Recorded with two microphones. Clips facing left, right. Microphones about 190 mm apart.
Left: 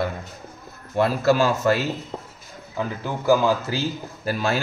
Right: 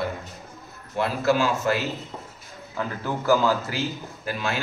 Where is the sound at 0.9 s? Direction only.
40° left (ahead or behind).